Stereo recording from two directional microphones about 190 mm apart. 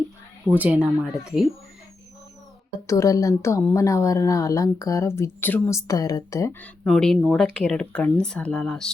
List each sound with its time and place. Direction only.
0.4 s speech: 10° right (ahead or behind)
2.8 s speech: 15° left (ahead or behind)
6.8 s speech: centre (ahead or behind)